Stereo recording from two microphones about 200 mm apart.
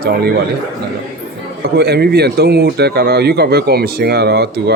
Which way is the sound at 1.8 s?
55° right (ahead or behind).